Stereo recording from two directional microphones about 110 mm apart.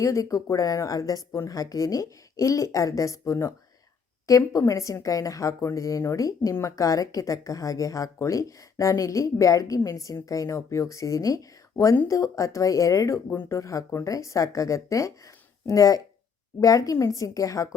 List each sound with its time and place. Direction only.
0.0 s a woman's voice: 30° left (ahead or behind)